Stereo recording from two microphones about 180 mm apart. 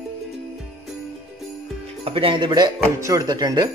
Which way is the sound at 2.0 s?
30° right (ahead or behind).